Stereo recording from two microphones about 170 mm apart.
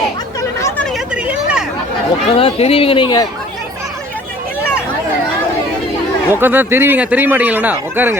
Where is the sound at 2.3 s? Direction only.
35° left (ahead or behind).